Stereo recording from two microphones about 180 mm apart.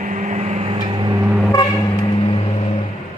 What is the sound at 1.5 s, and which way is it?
Vehicle, 20° left (ahead or behind).